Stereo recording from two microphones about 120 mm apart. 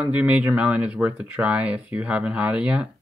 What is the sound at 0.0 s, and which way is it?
Speech, 10° right (ahead or behind).